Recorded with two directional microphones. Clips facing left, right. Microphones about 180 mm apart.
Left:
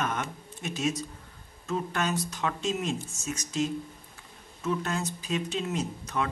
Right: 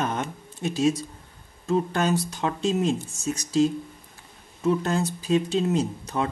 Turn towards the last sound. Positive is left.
turn(degrees=-30)  # may be behind; listen again after turning